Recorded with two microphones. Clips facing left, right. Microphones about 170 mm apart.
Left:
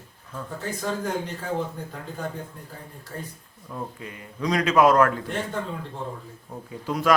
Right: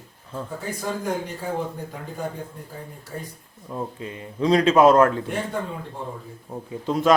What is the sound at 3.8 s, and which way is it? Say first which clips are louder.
A man's voice: right 4 dB; 25° right (ahead or behind).